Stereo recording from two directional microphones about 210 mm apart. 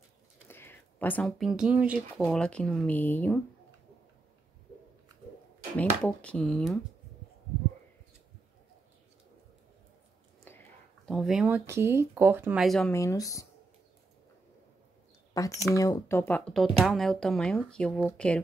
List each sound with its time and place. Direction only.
0.5 s speech: 10° left (ahead or behind)
5.8 s speech: 5° left (ahead or behind)
11.1 s speech: centre (ahead or behind)
12.9 s speech: 15° left (ahead or behind)
15.3 s speech: 15° left (ahead or behind)